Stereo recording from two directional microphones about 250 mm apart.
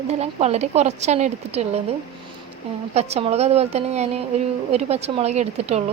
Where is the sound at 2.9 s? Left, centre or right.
Right.